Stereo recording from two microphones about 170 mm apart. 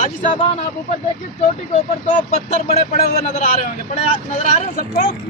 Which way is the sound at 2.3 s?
40° left (ahead or behind).